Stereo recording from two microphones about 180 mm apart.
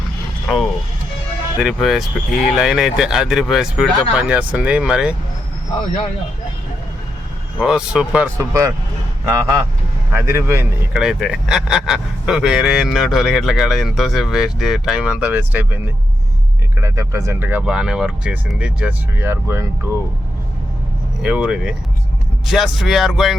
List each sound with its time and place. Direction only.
0.4 s speech: centre (ahead or behind)
7.6 s speech: 5° right (ahead or behind)
16.8 s speech: 15° right (ahead or behind)
21.2 s speech: 5° right (ahead or behind)